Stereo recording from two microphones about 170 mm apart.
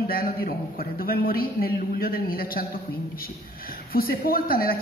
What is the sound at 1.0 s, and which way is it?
Speech, 60° left (ahead or behind).